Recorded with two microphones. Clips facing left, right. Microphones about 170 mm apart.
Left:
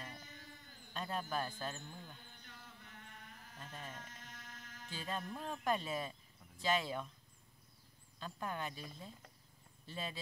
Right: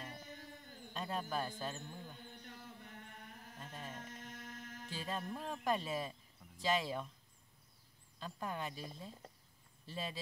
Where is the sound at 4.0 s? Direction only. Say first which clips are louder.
Right 5 dB; 55° right (ahead or behind).